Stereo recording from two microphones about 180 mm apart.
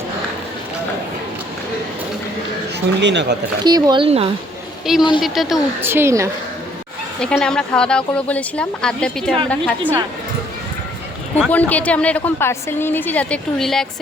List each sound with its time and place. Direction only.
3.0 s speech: 80° right
3.6 s speech: 20° right (ahead or behind)
4.9 s speech: centre (ahead or behind)
5.8 s a woman's voice: 10° right (ahead or behind)
7.2 s a woman's voice: 5° left (ahead or behind)
11.3 s a woman's voice: 10° left (ahead or behind)